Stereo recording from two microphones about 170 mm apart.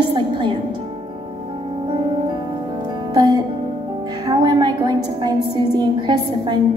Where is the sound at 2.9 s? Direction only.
25° right (ahead or behind).